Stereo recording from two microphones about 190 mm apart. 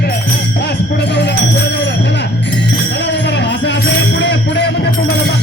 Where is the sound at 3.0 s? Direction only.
65° left (ahead or behind).